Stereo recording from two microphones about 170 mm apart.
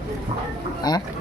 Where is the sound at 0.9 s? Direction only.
25° left (ahead or behind).